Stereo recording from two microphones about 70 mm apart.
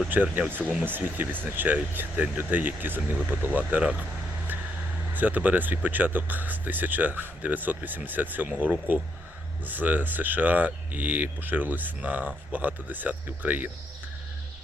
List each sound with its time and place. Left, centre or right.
0.1 s speech: right
0.9 s speech: right
5.1 s speech: right